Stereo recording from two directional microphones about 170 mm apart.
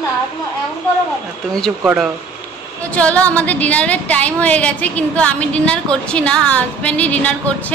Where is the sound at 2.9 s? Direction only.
10° left (ahead or behind).